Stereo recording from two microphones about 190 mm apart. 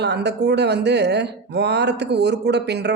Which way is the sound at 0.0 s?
60° right (ahead or behind).